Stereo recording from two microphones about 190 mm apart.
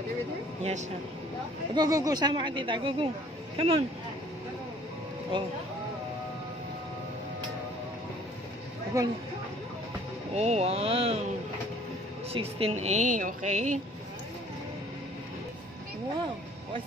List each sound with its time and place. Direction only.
1.8 s a woman's voice: 20° right (ahead or behind)
5.3 s a woman's voice: 25° right (ahead or behind)
9.0 s speech: 15° right (ahead or behind)
10.3 s speech: 35° right (ahead or behind)
12.3 s speech: 30° right (ahead or behind)